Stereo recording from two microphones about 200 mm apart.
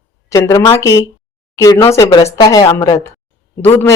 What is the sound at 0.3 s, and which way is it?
A woman's voice, 15° left (ahead or behind).